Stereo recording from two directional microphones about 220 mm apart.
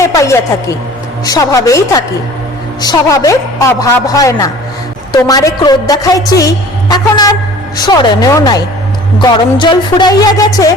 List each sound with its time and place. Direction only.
0.0 s music: 15° left (ahead or behind)
1.2 s a woman's voice: 15° left (ahead or behind)